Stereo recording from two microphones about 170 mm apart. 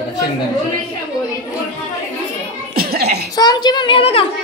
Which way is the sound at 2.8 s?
65° right (ahead or behind).